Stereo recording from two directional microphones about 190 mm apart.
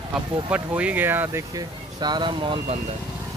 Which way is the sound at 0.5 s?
5° right (ahead or behind).